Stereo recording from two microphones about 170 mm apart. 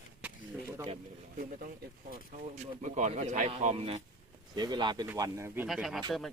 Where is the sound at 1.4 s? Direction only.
55° right (ahead or behind).